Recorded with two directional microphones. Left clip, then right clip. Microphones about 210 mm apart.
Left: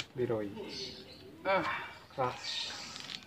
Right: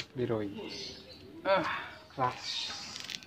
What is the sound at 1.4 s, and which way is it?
Speech, 30° right (ahead or behind).